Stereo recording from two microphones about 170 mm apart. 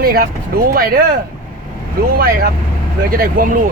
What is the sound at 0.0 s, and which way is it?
Speech, 60° right (ahead or behind).